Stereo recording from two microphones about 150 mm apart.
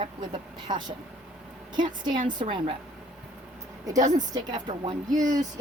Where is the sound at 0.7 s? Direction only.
30° right (ahead or behind).